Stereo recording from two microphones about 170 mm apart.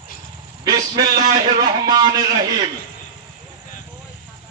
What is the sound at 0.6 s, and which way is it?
A man's voice, 25° right (ahead or behind).